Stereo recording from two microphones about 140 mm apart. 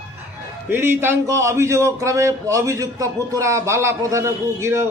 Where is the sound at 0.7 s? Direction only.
15° right (ahead or behind).